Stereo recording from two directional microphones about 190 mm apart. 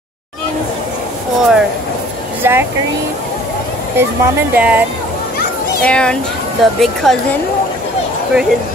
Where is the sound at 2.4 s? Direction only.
10° right (ahead or behind).